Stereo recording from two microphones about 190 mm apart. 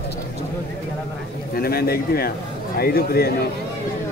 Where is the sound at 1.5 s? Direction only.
55° left (ahead or behind).